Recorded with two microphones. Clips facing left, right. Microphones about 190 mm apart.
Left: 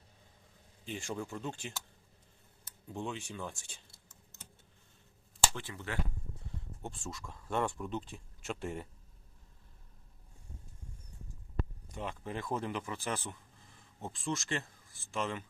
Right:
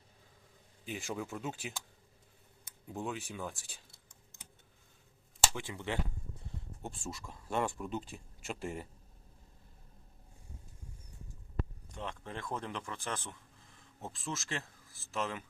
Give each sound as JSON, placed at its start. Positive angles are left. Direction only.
{"t": 0.9, "sound": "speech", "side_deg": -5}
{"t": 2.9, "sound": "speech", "side_deg": -5}
{"t": 5.5, "sound": "speech", "side_deg": -15}
{"t": 6.8, "sound": "speech", "side_deg": -5}
{"t": 11.9, "sound": "speech", "side_deg": 10}